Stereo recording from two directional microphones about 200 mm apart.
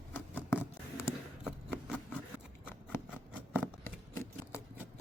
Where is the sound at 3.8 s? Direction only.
15° left (ahead or behind).